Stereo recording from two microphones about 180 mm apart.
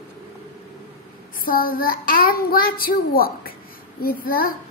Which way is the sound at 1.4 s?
55° left (ahead or behind).